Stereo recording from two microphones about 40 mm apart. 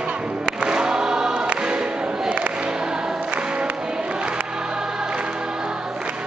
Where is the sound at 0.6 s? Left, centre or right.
Right.